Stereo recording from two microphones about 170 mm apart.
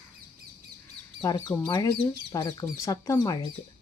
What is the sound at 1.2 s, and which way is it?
Speech, 20° left (ahead or behind).